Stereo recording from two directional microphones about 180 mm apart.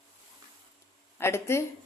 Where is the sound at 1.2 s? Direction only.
15° left (ahead or behind).